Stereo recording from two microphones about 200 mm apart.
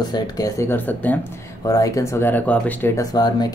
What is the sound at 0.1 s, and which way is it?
Speech, 15° left (ahead or behind).